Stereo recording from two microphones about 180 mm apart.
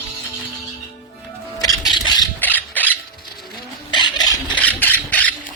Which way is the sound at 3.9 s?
25° left (ahead or behind).